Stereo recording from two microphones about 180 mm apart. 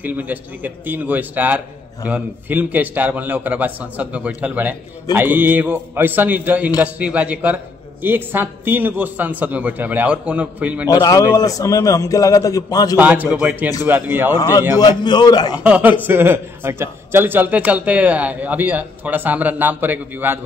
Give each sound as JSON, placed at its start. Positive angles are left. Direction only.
{"t": 0.0, "sound": "a man's voice", "side_deg": -10}
{"t": 10.9, "sound": "a man's voice", "side_deg": 20}
{"t": 12.9, "sound": "a man's voice", "side_deg": -10}
{"t": 14.3, "sound": "a man's voice", "side_deg": 20}
{"t": 15.5, "sound": "a man's voice", "side_deg": -5}